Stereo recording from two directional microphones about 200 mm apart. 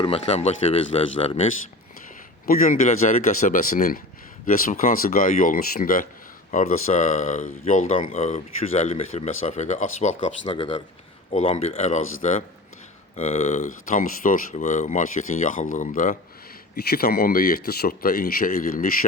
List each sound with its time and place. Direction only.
0.0 s speech: 30° left (ahead or behind)
2.5 s speech: 40° left (ahead or behind)
13.1 s speech: 30° left (ahead or behind); by 18.5 s 50° left (ahead or behind)